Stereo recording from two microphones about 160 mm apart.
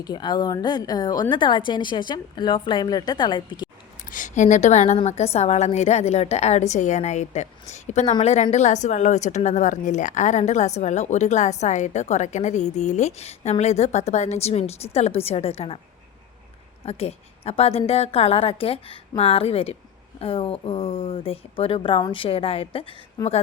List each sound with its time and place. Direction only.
0.0 s a woman's voice: 25° left (ahead or behind)
4.1 s a woman's voice: 50° left (ahead or behind)
16.8 s a woman's voice: 40° left (ahead or behind)
23.2 s a woman's voice: 25° left (ahead or behind)